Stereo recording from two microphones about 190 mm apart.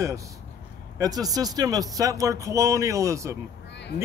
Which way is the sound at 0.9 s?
20° right (ahead or behind).